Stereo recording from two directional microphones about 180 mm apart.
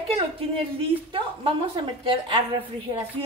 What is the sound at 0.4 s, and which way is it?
A woman's voice, 30° right (ahead or behind).